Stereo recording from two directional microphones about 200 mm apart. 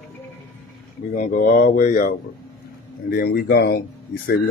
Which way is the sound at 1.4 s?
50° left (ahead or behind).